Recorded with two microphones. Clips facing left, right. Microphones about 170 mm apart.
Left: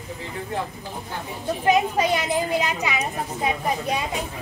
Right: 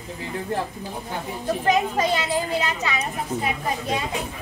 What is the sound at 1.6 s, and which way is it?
A child's voice, 15° left (ahead or behind).